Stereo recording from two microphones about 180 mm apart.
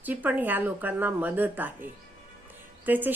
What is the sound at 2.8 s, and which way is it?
Speech, 10° right (ahead or behind).